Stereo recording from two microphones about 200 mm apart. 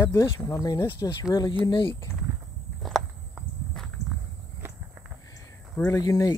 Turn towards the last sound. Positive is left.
turn(degrees=15)  # may be behind; listen again after turning